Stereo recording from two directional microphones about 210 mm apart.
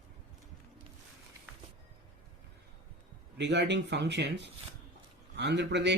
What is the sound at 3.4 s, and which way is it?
Speech, 55° right (ahead or behind).